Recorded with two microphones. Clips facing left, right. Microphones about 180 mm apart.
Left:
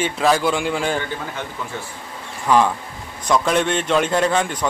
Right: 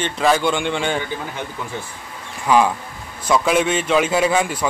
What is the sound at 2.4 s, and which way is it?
A man's voice, 10° right (ahead or behind).